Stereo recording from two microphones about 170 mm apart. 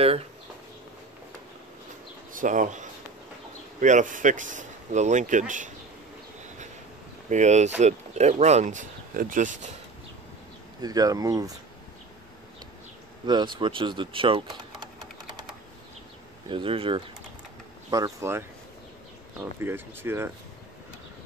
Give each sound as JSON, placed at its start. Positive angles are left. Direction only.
{"t": 2.3, "sound": "speech", "side_deg": -50}
{"t": 7.2, "sound": "speech", "side_deg": -45}
{"t": 10.8, "sound": "speech", "side_deg": -20}
{"t": 13.3, "sound": "speech", "side_deg": -25}
{"t": 16.4, "sound": "speech", "side_deg": -30}
{"t": 17.9, "sound": "speech", "side_deg": -20}